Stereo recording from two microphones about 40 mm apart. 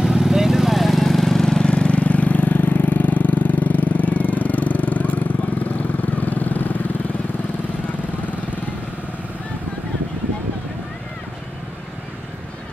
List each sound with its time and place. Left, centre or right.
0.0 s vehicle: centre
1.0 s lawn mower: centre
1.7 s vehicle: left